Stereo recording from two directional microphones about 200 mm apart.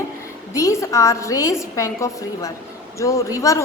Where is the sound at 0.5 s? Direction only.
15° left (ahead or behind).